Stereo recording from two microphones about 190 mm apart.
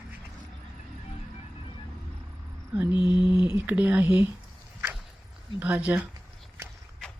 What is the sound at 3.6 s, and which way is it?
Speech, 10° right (ahead or behind).